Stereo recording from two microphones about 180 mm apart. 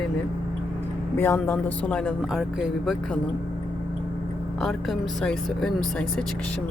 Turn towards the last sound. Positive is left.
turn(degrees=5)  # may be behind; listen again after turning